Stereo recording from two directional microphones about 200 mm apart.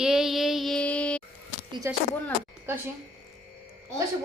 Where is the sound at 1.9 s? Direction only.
15° right (ahead or behind).